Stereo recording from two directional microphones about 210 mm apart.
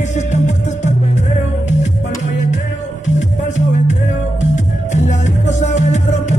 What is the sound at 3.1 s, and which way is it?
Music, 35° left (ahead or behind).